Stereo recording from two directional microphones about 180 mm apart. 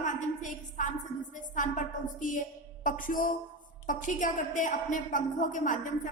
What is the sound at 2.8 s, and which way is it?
A woman's voice, 45° left (ahead or behind).